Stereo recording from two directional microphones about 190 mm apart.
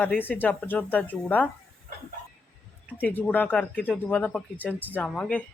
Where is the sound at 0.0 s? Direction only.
10° left (ahead or behind).